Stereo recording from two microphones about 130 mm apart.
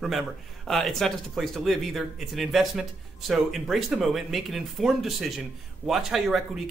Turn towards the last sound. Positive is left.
turn(degrees=0)  # may be behind; listen again after turning